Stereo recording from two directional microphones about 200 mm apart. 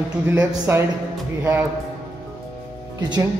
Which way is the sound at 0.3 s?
10° right (ahead or behind).